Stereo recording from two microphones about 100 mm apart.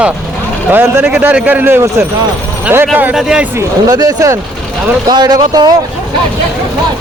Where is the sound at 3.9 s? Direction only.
40° right (ahead or behind).